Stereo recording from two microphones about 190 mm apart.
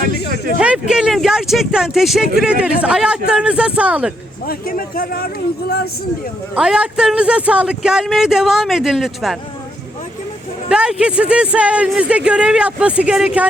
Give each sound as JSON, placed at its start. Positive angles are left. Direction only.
{"t": 0.6, "sound": "speech", "side_deg": -5}
{"t": 4.4, "sound": "speech", "side_deg": 50}
{"t": 6.6, "sound": "speech", "side_deg": -5}
{"t": 10.7, "sound": "speech", "side_deg": -5}